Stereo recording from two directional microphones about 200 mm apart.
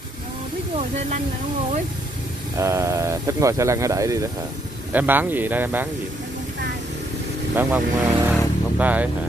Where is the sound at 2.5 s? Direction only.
15° right (ahead or behind).